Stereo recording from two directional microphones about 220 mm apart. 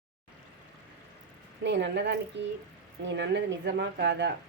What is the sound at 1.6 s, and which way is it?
Speech, 55° right (ahead or behind).